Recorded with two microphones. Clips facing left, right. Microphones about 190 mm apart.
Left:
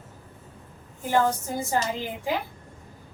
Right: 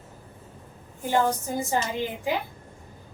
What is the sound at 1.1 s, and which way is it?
Speech, 20° right (ahead or behind).